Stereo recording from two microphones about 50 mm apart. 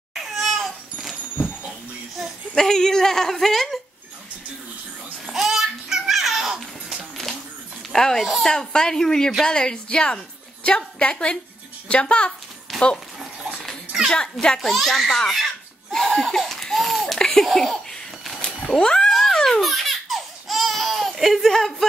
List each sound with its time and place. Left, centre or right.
0.1 s cat: centre
2.5 s a woman's voice: centre
5.2 s babbling: centre
7.9 s a woman's voice: centre
12.7 s a sound: centre
14.6 s speech: centre
18.4 s cat: centre
19.3 s laughter: centre